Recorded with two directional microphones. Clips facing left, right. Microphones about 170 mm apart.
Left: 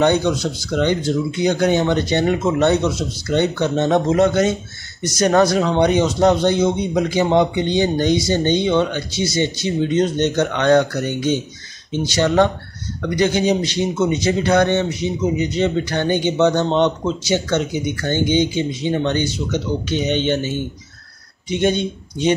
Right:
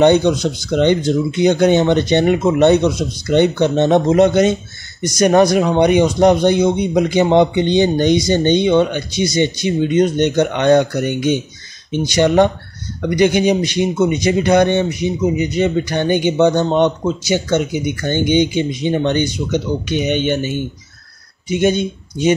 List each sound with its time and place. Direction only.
0.0 s speech: 20° right (ahead or behind)